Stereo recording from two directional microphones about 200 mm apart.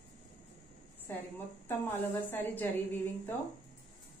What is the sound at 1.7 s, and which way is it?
A woman's voice, 10° left (ahead or behind).